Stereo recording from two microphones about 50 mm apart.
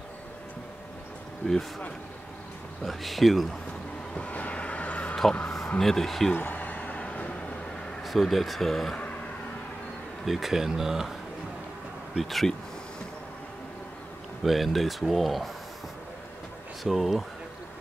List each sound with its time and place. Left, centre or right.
1.4 s speech: centre
2.8 s speech: centre
4.1 s a sound: left
5.8 s speech: centre
6.3 s a sound: left
8.0 s speech: centre
8.9 s a sound: left
10.2 s speech: centre
12.2 s speech: centre
14.4 s speech: centre
16.8 s speech: centre